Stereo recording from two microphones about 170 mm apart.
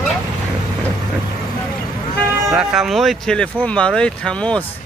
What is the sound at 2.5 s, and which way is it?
Speech, 5° right (ahead or behind).